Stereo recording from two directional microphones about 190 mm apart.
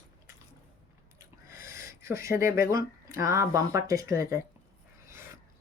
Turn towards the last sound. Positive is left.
turn(degrees=-15)  # may be behind; listen again after turning